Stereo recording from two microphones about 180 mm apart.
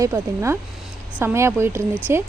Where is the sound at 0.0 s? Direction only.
15° right (ahead or behind).